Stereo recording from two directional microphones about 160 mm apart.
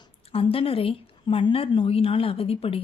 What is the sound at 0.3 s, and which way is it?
Speech, 35° left (ahead or behind).